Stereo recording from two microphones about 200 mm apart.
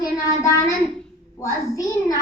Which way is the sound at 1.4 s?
15° left (ahead or behind).